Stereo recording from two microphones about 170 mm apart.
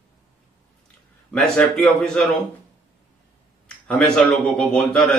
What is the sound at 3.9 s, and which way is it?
A man's voice, 5° left (ahead or behind).